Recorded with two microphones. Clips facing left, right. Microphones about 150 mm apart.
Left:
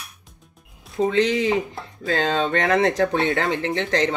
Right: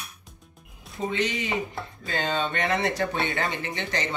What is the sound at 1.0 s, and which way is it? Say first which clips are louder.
Speech: left 9 dB; 90° left.